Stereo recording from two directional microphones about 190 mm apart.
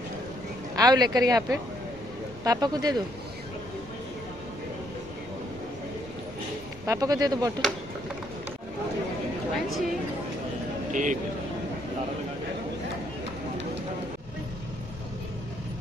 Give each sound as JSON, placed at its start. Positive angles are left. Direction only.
{"t": 0.7, "sound": "speech", "side_deg": -20}
{"t": 6.9, "sound": "speech", "side_deg": -20}
{"t": 9.5, "sound": "chatter", "side_deg": 0}
{"t": 10.9, "sound": "a man's voice", "side_deg": -40}